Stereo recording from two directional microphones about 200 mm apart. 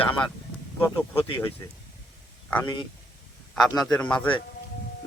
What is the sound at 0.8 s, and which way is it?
Speech, 10° left (ahead or behind).